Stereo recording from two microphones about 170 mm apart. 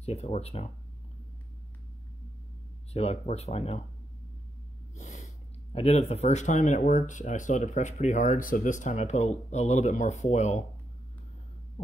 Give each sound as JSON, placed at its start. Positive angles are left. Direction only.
{"t": 0.0, "sound": "speech", "side_deg": 40}
{"t": 2.9, "sound": "speech", "side_deg": 40}
{"t": 4.9, "sound": "speech", "side_deg": 40}